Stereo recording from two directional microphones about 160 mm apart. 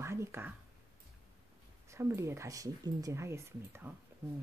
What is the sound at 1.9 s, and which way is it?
Speech, 15° right (ahead or behind).